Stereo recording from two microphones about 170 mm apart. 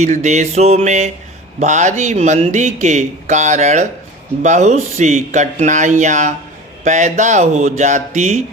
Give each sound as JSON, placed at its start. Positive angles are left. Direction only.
{"t": 0.0, "sound": "a man's voice", "side_deg": -45}